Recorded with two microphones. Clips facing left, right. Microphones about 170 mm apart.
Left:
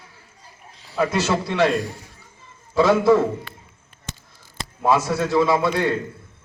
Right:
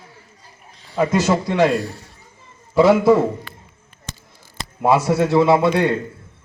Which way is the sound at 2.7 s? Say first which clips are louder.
Right 3 dB; 15° right (ahead or behind).